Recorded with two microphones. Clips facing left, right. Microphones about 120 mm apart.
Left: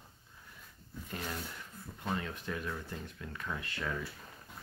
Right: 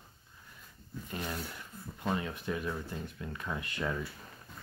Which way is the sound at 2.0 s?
10° right (ahead or behind).